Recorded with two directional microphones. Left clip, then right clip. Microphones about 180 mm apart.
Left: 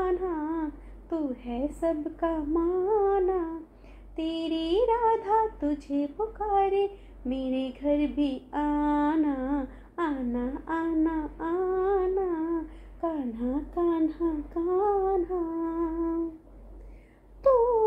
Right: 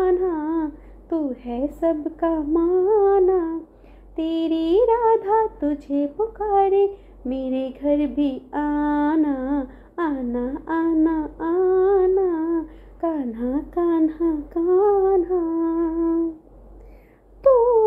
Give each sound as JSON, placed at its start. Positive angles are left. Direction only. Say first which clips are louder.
{"t": 0.0, "sound": "child singing", "louder": "right 8 dB", "side_deg": -35}
{"t": 1.1, "sound": "a woman's voice", "louder": "right 6 dB", "side_deg": -40}
{"t": 1.8, "sound": "a sound", "louder": "right 7 dB", "side_deg": -35}